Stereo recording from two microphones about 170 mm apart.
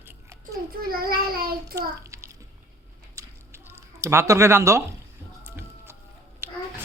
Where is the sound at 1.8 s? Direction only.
20° right (ahead or behind).